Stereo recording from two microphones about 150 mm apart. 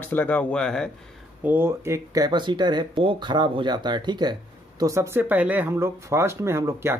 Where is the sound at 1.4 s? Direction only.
15° right (ahead or behind).